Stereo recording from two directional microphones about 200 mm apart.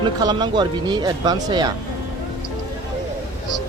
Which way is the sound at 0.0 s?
20° right (ahead or behind).